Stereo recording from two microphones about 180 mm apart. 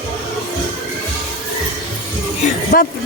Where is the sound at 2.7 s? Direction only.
60° left (ahead or behind).